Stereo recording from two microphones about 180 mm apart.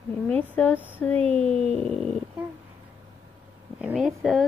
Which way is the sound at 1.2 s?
35° right (ahead or behind).